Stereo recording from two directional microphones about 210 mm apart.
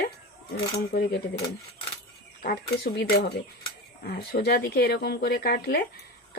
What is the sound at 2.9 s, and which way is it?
Speech, 50° left (ahead or behind).